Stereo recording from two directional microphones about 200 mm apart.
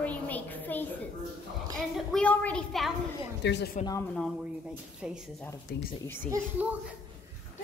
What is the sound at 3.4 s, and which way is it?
Speech, 55° left (ahead or behind).